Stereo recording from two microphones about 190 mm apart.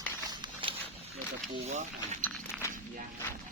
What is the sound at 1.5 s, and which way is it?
Speech, 35° right (ahead or behind).